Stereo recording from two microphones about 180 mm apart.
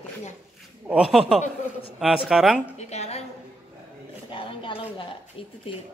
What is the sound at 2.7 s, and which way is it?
Speech, 35° left (ahead or behind).